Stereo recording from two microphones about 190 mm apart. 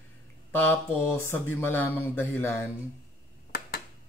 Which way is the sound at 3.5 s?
55° left (ahead or behind).